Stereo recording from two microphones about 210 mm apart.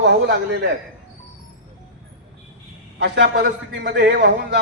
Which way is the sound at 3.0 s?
55° right (ahead or behind).